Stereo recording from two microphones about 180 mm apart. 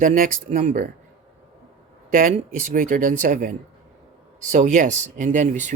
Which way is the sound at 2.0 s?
50° right (ahead or behind).